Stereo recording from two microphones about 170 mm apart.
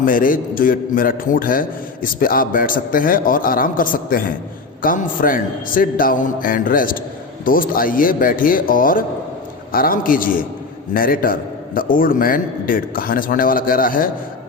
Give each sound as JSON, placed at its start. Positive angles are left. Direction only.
{"t": 0.0, "sound": "a man's voice", "side_deg": 55}